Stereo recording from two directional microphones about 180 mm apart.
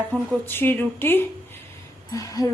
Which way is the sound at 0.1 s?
10° left (ahead or behind).